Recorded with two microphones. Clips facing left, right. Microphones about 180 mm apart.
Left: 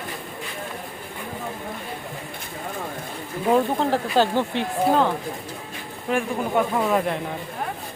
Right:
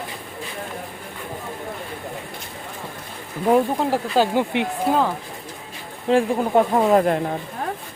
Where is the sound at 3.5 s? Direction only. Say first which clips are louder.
Right 1 dB; 10° right (ahead or behind).